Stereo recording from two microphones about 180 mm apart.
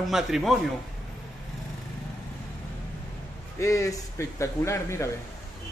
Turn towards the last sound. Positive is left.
turn(degrees=15)  # may be behind; listen again after turning